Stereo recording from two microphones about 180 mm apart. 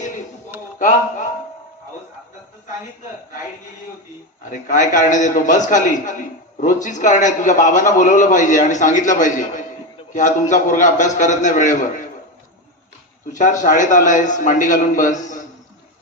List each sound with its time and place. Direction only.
0.8 s speech: 45° left (ahead or behind)
4.4 s a man's voice: 45° left (ahead or behind)
13.3 s a man's voice: 45° left (ahead or behind)